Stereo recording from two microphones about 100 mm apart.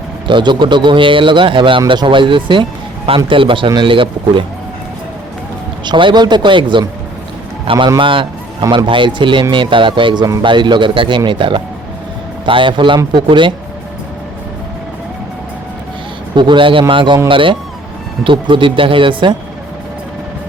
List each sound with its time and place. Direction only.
0.3 s speech: 55° right (ahead or behind)
5.8 s a man's voice: 50° right (ahead or behind)
7.9 s speech: 55° right (ahead or behind)
16.3 s a man's voice: 50° right (ahead or behind)